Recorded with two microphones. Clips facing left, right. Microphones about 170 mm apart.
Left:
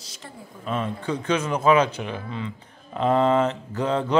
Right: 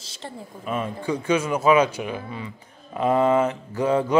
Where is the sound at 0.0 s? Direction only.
30° right (ahead or behind).